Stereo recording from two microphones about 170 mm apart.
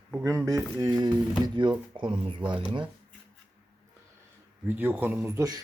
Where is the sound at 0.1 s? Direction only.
10° right (ahead or behind); by 2.9 s 30° right (ahead or behind).